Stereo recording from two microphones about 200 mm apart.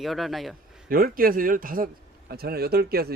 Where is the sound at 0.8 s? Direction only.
45° right (ahead or behind).